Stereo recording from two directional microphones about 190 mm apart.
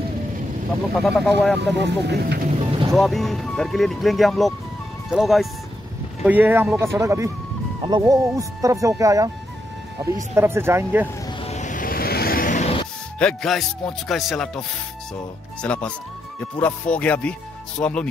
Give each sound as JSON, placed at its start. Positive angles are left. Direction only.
{"t": 0.9, "sound": "speech", "side_deg": 0}
{"t": 1.6, "sound": "speech", "side_deg": -65}
{"t": 2.6, "sound": "music", "side_deg": -30}
{"t": 2.9, "sound": "speech", "side_deg": 0}
{"t": 10.3, "sound": "speech", "side_deg": -15}
{"t": 11.2, "sound": "music", "side_deg": 35}
{"t": 13.2, "sound": "speech", "side_deg": 5}
{"t": 15.6, "sound": "speech", "side_deg": 5}